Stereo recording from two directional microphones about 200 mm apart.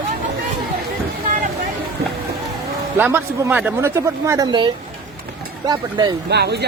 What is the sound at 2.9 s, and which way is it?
Speech, 10° right (ahead or behind).